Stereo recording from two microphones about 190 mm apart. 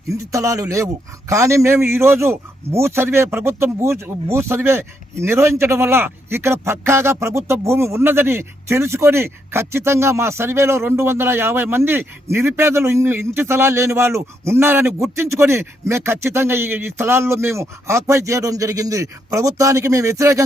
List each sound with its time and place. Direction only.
0.3 s a man's voice: 15° right (ahead or behind)